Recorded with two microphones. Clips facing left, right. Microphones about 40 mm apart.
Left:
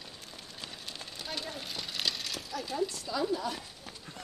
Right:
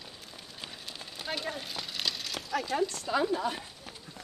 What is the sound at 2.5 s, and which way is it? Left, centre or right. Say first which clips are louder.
Speech: right 7 dB; right.